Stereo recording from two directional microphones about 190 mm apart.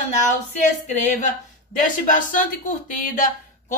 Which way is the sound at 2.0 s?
45° left (ahead or behind).